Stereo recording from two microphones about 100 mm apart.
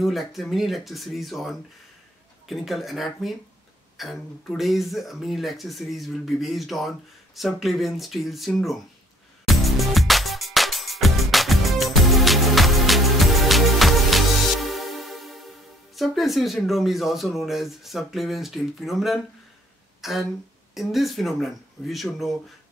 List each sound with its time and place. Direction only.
0.0 s speech: centre (ahead or behind)
9.5 s music: centre (ahead or behind)
20.0 s speech: centre (ahead or behind)